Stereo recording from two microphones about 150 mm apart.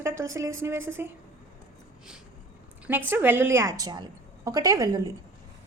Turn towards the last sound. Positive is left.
turn(degrees=-25)  # may be behind; listen again after turning